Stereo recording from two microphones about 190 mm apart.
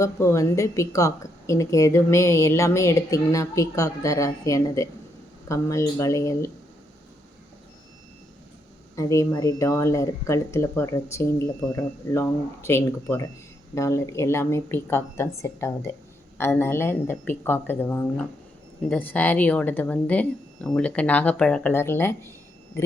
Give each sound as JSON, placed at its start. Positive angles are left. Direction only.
{"t": 0.0, "sound": "a woman's voice", "side_deg": 15}
{"t": 9.0, "sound": "a woman's voice", "side_deg": 15}